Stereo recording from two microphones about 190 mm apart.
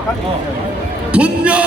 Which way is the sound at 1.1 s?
5° right (ahead or behind).